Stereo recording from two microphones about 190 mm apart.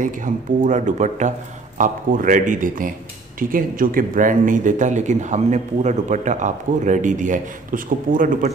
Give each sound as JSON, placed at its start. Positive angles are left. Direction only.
{"t": 0.0, "sound": "a man's voice", "side_deg": -45}